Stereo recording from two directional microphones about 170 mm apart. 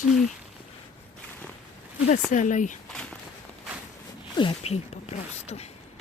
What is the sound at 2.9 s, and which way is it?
Speech, 5° left (ahead or behind).